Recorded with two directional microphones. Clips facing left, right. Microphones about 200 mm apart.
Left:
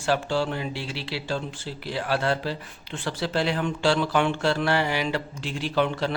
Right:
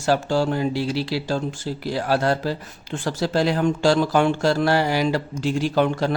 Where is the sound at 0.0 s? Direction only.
40° right (ahead or behind).